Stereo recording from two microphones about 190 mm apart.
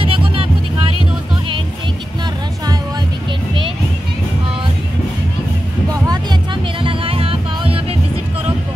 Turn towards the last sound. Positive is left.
turn(degrees=-30)  # may be behind; listen again after turning